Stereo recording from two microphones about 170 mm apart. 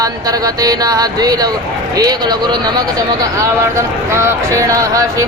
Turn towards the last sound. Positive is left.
turn(degrees=-20)  # may be behind; listen again after turning